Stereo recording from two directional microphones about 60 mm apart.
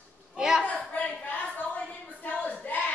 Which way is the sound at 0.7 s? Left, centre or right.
Left.